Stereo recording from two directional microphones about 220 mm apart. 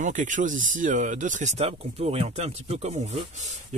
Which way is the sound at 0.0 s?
35° right (ahead or behind).